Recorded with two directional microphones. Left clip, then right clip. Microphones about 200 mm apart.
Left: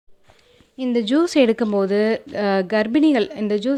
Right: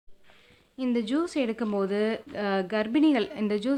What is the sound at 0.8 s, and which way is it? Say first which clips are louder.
Speech: left 9 dB; 15° left (ahead or behind).